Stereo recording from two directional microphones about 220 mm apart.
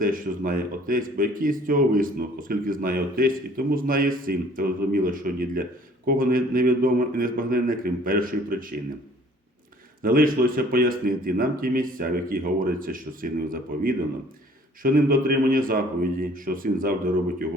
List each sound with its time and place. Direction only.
0.0 s a man's voice: 40° right (ahead or behind)
10.0 s a man's voice: 40° right (ahead or behind)